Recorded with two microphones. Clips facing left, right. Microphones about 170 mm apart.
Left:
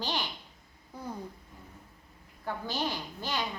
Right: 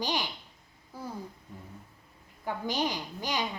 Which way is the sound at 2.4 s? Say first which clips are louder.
Right 3 dB; 15° right (ahead or behind).